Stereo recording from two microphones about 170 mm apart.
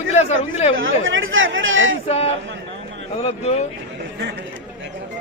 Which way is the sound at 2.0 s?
35° left (ahead or behind).